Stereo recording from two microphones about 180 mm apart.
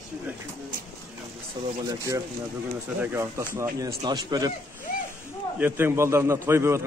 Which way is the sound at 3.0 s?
15° right (ahead or behind).